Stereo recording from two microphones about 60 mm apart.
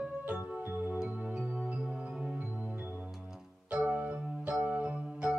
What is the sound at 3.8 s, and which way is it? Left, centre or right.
Keyboard, right.